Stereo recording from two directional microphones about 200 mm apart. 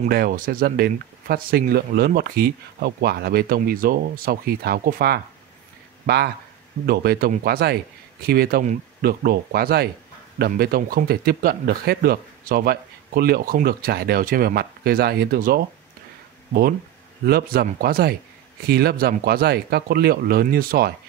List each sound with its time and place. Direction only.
0.1 s speech: 50° right (ahead or behind)
17.2 s speech: 50° right (ahead or behind)